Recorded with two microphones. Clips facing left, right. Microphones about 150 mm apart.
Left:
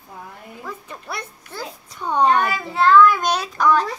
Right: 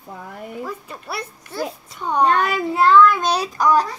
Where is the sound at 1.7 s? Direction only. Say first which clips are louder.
Right 4 dB; 25° right (ahead or behind).